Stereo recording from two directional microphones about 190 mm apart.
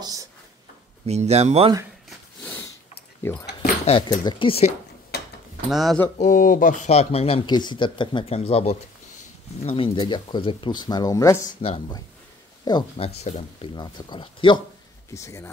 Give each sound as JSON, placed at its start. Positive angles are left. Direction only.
{"t": 0.0, "sound": "a sound", "side_deg": -20}
{"t": 1.0, "sound": "speech", "side_deg": -35}
{"t": 2.4, "sound": "sniff", "side_deg": 10}
{"t": 3.2, "sound": "speech", "side_deg": 10}
{"t": 5.1, "sound": "a sound", "side_deg": 55}
{"t": 5.7, "sound": "speech", "side_deg": 0}
{"t": 6.1, "sound": "speech", "side_deg": 40}
{"t": 11.6, "sound": "speech", "side_deg": 30}
{"t": 15.1, "sound": "speech", "side_deg": 15}